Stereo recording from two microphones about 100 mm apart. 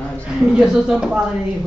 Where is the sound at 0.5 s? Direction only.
5° right (ahead or behind).